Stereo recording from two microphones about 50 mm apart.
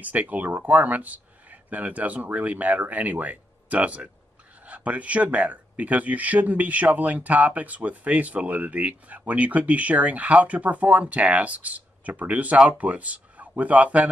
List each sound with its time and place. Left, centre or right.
0.0 s speech: right